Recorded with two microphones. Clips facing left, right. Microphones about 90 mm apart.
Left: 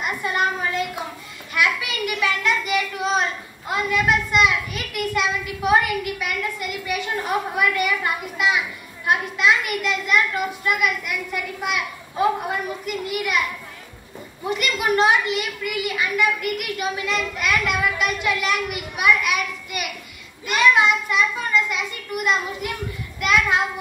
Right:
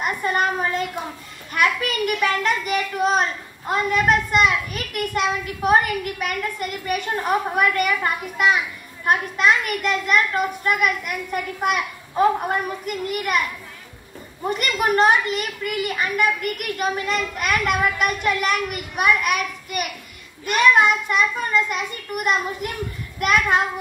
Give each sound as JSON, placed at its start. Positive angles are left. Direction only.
{"t": 0.0, "sound": "a sound", "side_deg": -45}
{"t": 1.5, "sound": "a child's voice", "side_deg": -45}
{"t": 14.4, "sound": "a child's voice", "side_deg": -45}